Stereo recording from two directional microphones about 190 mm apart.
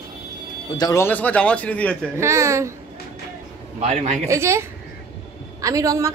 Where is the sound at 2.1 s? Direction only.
15° right (ahead or behind).